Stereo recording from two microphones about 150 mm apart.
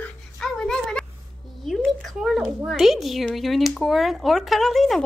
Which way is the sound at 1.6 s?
Centre (ahead or behind).